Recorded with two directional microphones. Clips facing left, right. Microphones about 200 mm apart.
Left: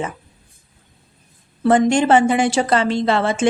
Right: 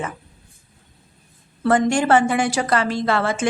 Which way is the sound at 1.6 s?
20° left (ahead or behind).